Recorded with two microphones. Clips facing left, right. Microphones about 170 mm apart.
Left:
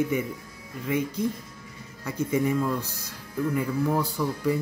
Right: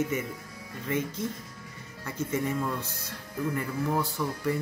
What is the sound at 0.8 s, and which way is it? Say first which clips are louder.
Music: left 4 dB; 15° left (ahead or behind).